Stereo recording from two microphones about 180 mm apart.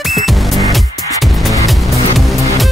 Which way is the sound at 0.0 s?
Centre (ahead or behind).